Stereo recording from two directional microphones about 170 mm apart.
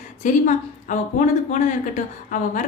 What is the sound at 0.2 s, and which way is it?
Speech, 45° left (ahead or behind).